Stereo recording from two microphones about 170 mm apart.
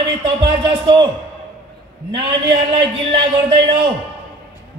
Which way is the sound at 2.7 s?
30° right (ahead or behind).